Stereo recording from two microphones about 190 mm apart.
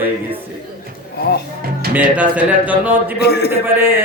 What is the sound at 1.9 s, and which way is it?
Speech, 10° right (ahead or behind).